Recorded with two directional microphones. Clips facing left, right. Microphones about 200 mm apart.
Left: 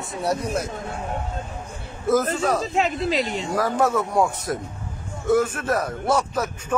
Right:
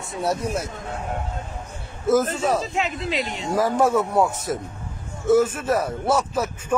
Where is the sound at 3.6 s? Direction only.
10° right (ahead or behind).